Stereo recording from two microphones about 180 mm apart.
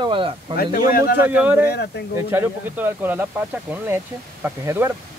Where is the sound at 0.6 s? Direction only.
55° left (ahead or behind).